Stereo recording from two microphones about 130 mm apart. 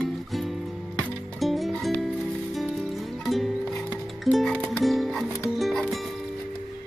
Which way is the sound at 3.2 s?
Centre (ahead or behind).